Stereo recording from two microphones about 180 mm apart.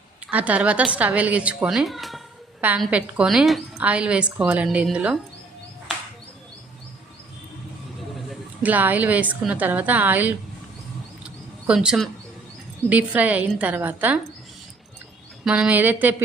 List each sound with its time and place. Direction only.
0.3 s a woman's voice: 10° right (ahead or behind)
8.3 s a woman's voice: 10° right (ahead or behind)
11.2 s a sound: 5° right (ahead or behind)
12.9 s a woman's voice: 10° right (ahead or behind)
15.4 s a woman's voice: 5° right (ahead or behind)